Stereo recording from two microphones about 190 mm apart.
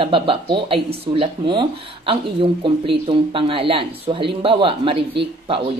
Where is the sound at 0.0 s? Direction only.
25° right (ahead or behind).